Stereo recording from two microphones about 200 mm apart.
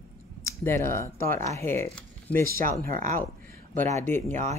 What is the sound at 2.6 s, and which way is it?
Speech, 45° right (ahead or behind).